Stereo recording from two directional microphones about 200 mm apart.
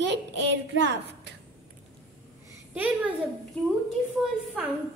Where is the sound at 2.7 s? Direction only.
10° right (ahead or behind).